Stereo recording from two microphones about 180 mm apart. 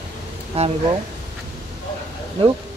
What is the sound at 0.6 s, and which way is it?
Speech, 35° right (ahead or behind).